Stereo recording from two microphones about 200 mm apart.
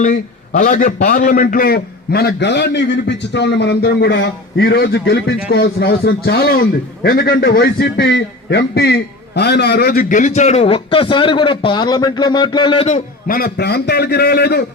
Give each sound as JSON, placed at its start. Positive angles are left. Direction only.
{"t": 0.0, "sound": "a man's voice", "side_deg": 40}
{"t": 13.2, "sound": "a man's voice", "side_deg": 45}